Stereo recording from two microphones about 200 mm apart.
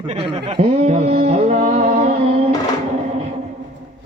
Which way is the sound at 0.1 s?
25° right (ahead or behind).